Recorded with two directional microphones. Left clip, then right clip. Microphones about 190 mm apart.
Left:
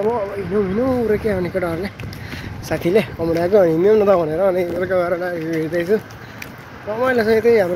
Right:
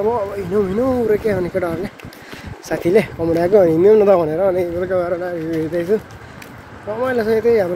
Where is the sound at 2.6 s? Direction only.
30° right (ahead or behind); by 6.0 s 10° right (ahead or behind).